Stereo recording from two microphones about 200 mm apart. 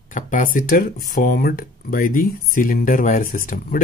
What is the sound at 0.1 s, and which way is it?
Speech, 45° left (ahead or behind).